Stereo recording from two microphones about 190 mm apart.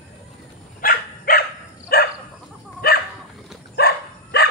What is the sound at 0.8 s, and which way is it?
Dog, 50° left (ahead or behind).